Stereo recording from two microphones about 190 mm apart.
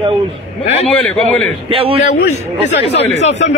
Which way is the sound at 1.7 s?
30° right (ahead or behind).